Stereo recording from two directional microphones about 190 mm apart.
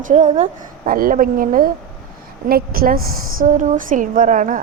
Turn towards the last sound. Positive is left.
turn(degrees=-45)  # may be behind; listen again after turning